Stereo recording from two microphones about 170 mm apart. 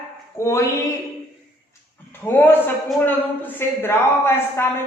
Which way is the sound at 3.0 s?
10° left (ahead or behind).